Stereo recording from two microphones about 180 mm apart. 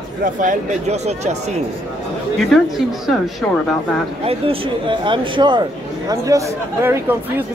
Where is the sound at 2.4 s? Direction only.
Centre (ahead or behind).